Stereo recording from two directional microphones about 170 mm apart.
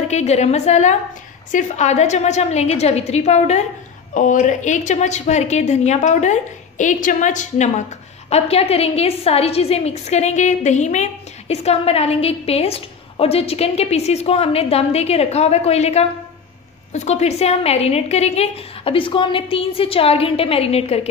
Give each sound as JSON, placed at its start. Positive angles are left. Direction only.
{"t": 0.1, "sound": "a woman's voice", "side_deg": 40}